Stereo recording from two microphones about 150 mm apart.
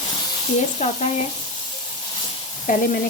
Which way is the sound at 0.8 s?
50° left (ahead or behind).